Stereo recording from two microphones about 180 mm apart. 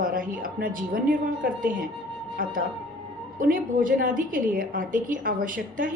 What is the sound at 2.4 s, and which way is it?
A woman's voice, 50° right (ahead or behind).